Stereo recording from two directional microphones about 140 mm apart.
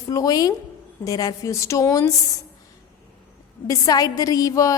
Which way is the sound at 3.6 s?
25° left (ahead or behind).